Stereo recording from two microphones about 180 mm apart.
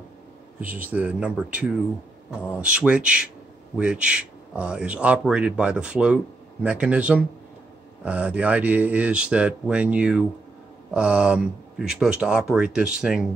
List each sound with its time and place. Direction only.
0.6 s a man's voice: 10° right (ahead or behind)